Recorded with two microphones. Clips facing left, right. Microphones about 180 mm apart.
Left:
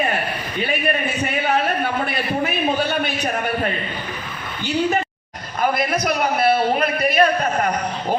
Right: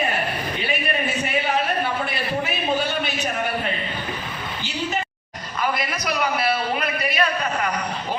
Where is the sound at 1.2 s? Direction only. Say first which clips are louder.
Left 5 dB; 55° left (ahead or behind).